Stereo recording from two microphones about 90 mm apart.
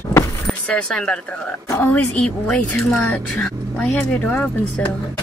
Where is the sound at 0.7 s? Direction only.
10° left (ahead or behind).